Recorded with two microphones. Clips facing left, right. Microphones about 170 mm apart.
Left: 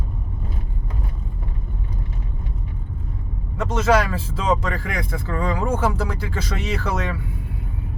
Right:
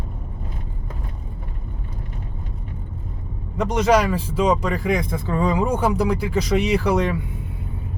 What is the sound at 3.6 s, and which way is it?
Speech, 15° right (ahead or behind).